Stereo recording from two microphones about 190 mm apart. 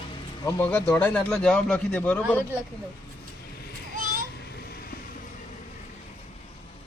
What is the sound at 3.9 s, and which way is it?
Children playing, 45° right (ahead or behind).